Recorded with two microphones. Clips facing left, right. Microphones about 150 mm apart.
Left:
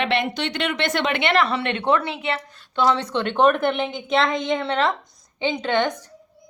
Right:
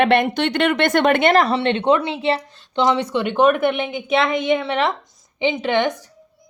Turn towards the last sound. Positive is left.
turn(degrees=-10)  # may be behind; listen again after turning